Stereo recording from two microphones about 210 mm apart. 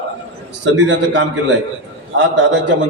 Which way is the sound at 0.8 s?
60° right (ahead or behind).